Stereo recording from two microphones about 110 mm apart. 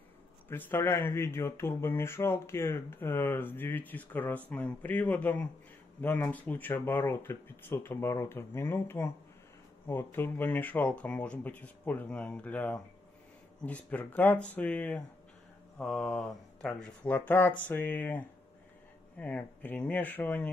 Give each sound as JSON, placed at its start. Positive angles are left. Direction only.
{"t": 0.5, "sound": "speech", "side_deg": 20}